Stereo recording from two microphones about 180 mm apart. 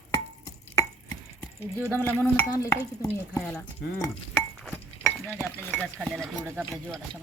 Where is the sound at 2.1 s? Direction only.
10° left (ahead or behind).